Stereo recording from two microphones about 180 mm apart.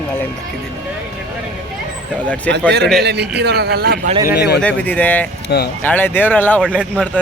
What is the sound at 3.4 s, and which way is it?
Speech, 65° right (ahead or behind).